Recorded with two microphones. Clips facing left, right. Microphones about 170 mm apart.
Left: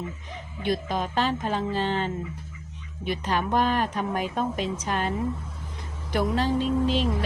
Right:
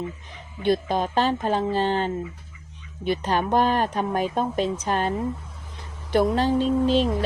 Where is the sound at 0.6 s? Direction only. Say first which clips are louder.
Right 5 dB; 30° right (ahead or behind).